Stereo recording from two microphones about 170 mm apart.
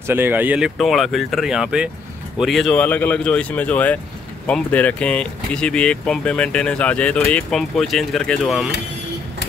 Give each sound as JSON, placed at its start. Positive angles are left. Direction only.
{"t": 0.0, "sound": "speech", "side_deg": -10}